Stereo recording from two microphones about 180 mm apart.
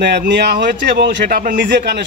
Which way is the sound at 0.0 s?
65° right (ahead or behind).